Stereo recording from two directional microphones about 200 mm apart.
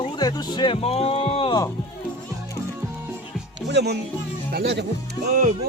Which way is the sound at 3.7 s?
55° right (ahead or behind).